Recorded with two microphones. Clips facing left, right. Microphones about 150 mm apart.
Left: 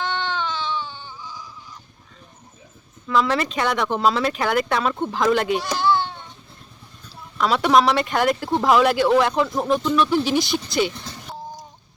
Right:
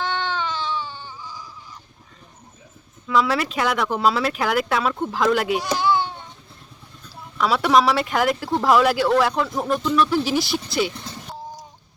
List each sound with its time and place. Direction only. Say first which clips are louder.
0.0 s baby cry: even; 5° right (ahead or behind)
3.1 s speech: even; 5° right (ahead or behind)
7.3 s speech: left 1 dB; 5° right (ahead or behind)